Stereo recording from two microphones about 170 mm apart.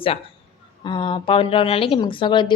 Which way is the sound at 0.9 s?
30° left (ahead or behind).